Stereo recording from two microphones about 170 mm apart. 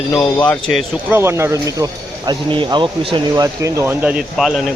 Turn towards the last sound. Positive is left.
turn(degrees=0)  # may be behind; listen again after turning